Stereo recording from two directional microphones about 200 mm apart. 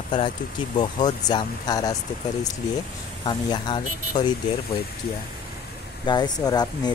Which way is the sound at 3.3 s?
20° left (ahead or behind).